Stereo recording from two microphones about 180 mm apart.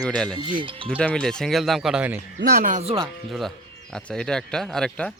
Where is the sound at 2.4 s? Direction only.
60° right (ahead or behind); by 3.0 s 35° right (ahead or behind).